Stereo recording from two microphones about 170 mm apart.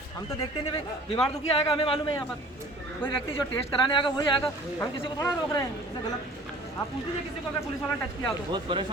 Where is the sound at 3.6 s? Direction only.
30° left (ahead or behind).